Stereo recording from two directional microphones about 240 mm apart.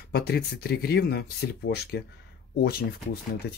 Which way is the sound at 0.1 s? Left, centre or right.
Left.